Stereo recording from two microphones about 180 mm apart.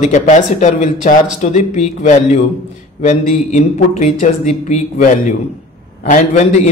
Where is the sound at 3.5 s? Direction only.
40° left (ahead or behind).